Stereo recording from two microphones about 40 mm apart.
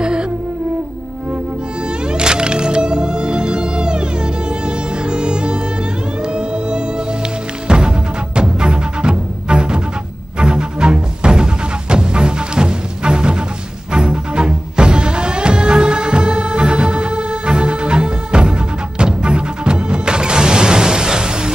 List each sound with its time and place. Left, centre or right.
0.0 s music: right
1.8 s music: right